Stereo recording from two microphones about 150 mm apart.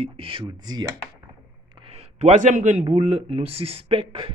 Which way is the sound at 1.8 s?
45° right (ahead or behind).